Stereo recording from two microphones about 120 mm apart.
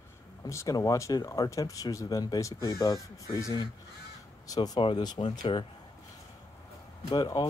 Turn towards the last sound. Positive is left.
turn(degrees=30)  # may be behind; listen again after turning